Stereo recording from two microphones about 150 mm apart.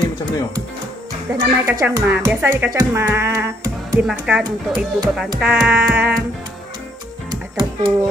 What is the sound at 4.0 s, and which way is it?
Speech, 5° right (ahead or behind).